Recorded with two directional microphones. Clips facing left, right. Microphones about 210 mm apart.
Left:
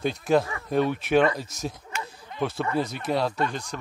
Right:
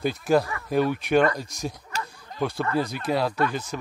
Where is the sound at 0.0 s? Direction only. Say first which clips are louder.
Right 1 dB; centre (ahead or behind).